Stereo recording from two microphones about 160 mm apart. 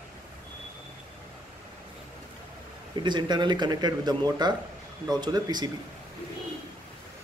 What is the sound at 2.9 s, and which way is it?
Speech, 25° right (ahead or behind).